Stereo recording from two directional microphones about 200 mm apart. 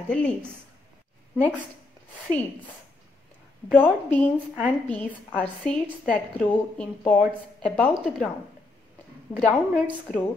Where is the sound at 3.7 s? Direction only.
10° left (ahead or behind).